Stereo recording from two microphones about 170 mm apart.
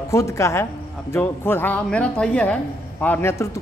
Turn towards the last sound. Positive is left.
turn(degrees=15)  # may be behind; listen again after turning